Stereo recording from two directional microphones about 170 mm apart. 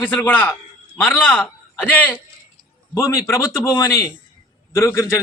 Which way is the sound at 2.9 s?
20° left (ahead or behind).